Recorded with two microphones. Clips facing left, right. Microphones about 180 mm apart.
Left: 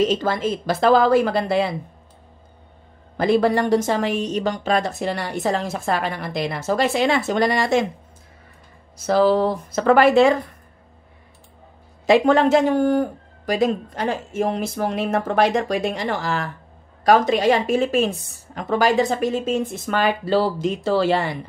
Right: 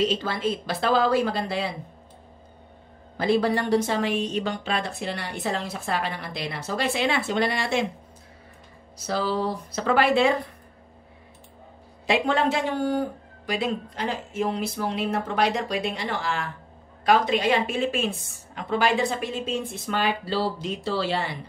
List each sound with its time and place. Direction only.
0.0 s a woman's voice: 45° left (ahead or behind)
3.2 s a woman's voice: 50° left (ahead or behind)
8.9 s a woman's voice: 50° left (ahead or behind)
12.1 s a woman's voice: 45° left (ahead or behind)